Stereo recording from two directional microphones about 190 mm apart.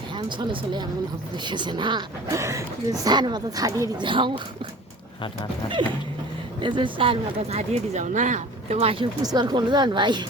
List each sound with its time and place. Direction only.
0.1 s speech: 25° right (ahead or behind)
6.6 s speech: 25° right (ahead or behind)